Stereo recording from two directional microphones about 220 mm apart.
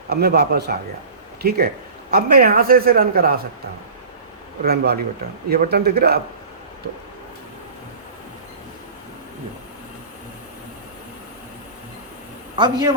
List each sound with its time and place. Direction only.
0.1 s a man's voice: 45° right (ahead or behind)
4.6 s a man's voice: 45° right (ahead or behind)
12.5 s a man's voice: 20° right (ahead or behind)